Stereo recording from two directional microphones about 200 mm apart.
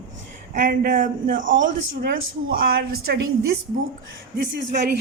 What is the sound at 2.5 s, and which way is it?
Speech, 50° right (ahead or behind).